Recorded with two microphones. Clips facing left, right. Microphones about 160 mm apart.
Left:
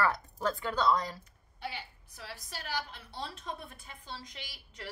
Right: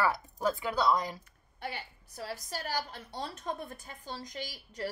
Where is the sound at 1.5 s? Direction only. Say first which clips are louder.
Right 1 dB; 50° right (ahead or behind).